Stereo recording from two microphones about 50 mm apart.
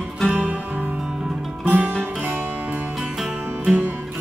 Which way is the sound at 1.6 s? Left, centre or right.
Right.